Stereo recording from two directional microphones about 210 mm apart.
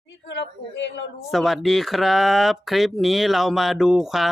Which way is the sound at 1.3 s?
Centre (ahead or behind).